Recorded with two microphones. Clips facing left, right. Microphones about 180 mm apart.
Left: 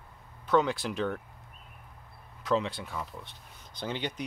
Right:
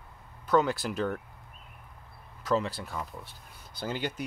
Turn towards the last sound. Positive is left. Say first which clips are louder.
# right 1 dB
turn(degrees=-5)  # may be behind; listen again after turning